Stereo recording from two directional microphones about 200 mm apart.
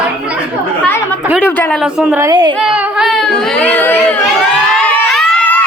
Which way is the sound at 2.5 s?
5° right (ahead or behind).